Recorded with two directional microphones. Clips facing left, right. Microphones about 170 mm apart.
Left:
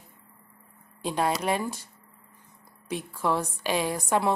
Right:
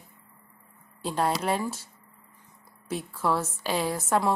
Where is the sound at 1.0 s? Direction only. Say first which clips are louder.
Even; 10° left (ahead or behind).